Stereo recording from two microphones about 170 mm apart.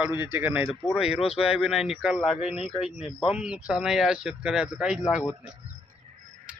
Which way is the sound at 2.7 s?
35° left (ahead or behind).